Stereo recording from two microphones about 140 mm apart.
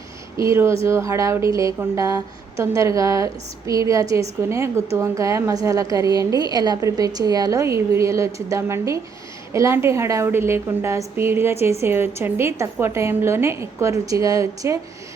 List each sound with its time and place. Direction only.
0.3 s speech: 20° right (ahead or behind)